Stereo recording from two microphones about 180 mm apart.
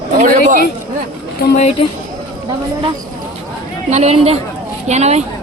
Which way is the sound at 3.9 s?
35° right (ahead or behind).